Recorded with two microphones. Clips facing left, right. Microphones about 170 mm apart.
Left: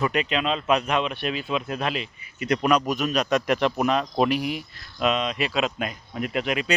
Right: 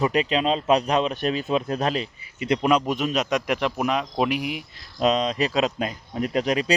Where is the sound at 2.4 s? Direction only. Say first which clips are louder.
Right 1 dB; 25° right (ahead or behind).